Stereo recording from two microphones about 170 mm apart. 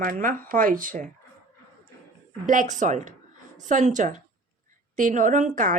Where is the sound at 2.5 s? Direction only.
45° right (ahead or behind).